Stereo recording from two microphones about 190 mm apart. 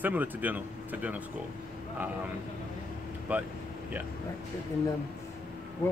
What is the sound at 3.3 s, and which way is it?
Speech, 10° right (ahead or behind).